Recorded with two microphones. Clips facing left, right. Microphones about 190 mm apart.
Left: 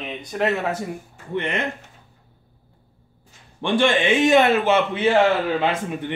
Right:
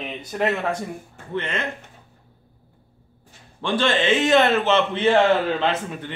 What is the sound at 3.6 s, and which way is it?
A man's voice, 15° left (ahead or behind).